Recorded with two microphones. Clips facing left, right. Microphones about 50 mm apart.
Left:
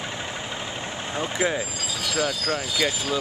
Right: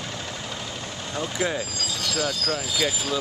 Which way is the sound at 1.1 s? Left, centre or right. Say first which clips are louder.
Left 1 dB; centre.